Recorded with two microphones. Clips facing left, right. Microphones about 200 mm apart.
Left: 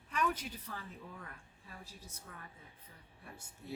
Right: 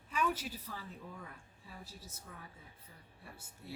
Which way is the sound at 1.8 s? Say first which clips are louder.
Right 1 dB; 15° left (ahead or behind).